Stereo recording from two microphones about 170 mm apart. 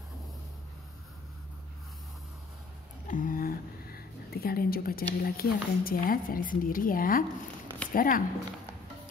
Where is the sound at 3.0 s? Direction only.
50° left (ahead or behind).